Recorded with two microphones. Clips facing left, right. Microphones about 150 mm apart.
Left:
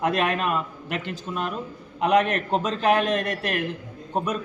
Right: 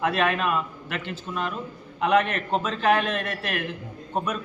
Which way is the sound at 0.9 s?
40° left (ahead or behind).